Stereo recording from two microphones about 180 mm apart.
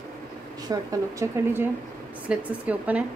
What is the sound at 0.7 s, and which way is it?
Speech, 20° right (ahead or behind).